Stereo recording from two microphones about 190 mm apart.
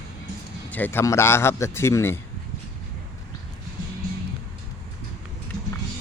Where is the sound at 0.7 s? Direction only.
10° left (ahead or behind).